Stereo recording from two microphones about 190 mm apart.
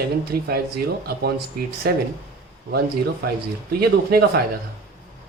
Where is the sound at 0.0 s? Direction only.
55° right (ahead or behind).